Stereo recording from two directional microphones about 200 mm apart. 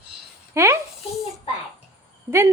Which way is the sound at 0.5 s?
15° right (ahead or behind).